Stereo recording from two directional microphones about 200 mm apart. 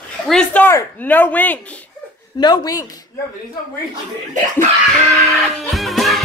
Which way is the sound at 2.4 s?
20° left (ahead or behind).